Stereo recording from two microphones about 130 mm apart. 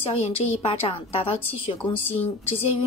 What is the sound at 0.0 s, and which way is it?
Speech, 45° left (ahead or behind).